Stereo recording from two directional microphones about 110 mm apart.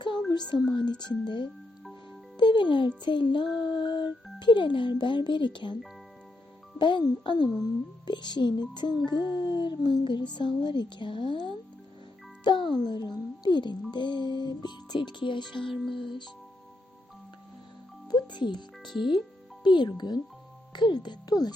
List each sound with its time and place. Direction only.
0.3 s a woman's voice: 40° left (ahead or behind)
2.4 s music: 45° left (ahead or behind)
3.0 s a child's voice: 45° left (ahead or behind)
6.7 s a child's voice: 45° left (ahead or behind)
18.1 s music: 45° left (ahead or behind)
18.9 s speech: centre (ahead or behind)
19.6 s a woman's voice: 40° left (ahead or behind)